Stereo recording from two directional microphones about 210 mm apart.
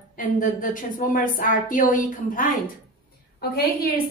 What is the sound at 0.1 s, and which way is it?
Speech, 40° left (ahead or behind).